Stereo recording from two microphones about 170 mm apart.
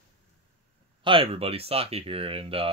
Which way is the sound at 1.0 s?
30° right (ahead or behind).